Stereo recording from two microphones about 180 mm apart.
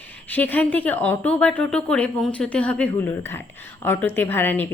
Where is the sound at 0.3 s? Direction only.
10° left (ahead or behind).